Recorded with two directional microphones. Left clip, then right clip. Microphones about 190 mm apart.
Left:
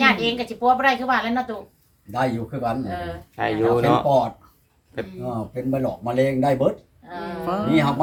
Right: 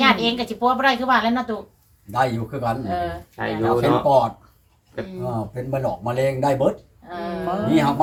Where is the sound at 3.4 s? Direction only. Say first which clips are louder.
Left 1 dB; 60° left (ahead or behind).